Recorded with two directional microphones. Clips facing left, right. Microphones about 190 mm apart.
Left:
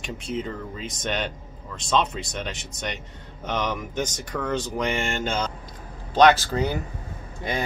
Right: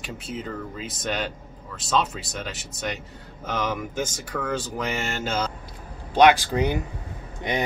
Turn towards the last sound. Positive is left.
turn(degrees=-20)  # may be behind; listen again after turning